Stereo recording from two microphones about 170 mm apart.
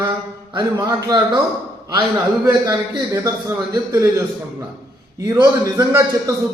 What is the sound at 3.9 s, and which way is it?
A man's voice, 20° right (ahead or behind).